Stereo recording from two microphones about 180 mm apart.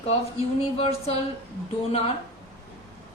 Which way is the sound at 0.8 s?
35° left (ahead or behind).